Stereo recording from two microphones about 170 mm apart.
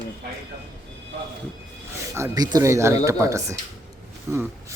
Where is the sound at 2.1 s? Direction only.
20° right (ahead or behind).